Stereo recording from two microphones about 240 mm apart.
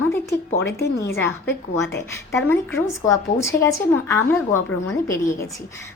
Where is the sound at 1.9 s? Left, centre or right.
Centre.